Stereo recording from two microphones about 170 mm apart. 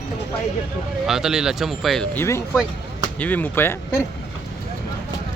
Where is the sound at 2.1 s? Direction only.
15° left (ahead or behind).